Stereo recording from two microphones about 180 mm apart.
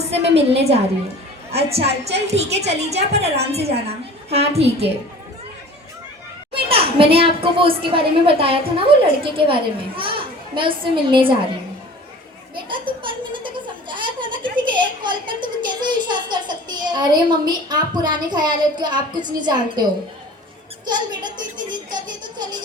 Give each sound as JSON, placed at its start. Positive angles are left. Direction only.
{"t": 0.1, "sound": "a woman's voice", "side_deg": -35}
{"t": 1.5, "sound": "a woman's voice", "side_deg": -35}
{"t": 6.5, "sound": "a child's voice", "side_deg": -30}
{"t": 12.6, "sound": "a sound", "side_deg": -25}
{"t": 14.6, "sound": "a child's voice", "side_deg": -25}
{"t": 20.8, "sound": "a child's voice", "side_deg": -25}